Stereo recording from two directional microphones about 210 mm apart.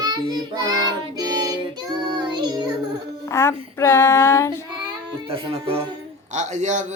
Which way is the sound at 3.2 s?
15° left (ahead or behind).